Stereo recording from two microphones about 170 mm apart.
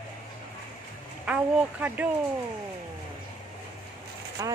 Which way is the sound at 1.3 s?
10° right (ahead or behind).